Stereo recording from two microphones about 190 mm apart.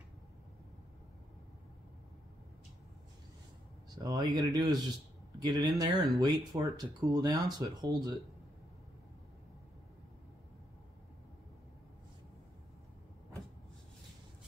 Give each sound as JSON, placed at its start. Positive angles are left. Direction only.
{"t": 3.9, "sound": "speech", "side_deg": -20}